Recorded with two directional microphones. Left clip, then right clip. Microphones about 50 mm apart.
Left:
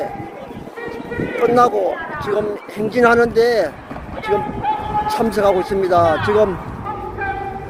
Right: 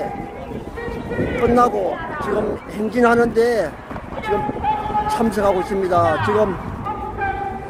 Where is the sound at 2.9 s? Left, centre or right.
Left.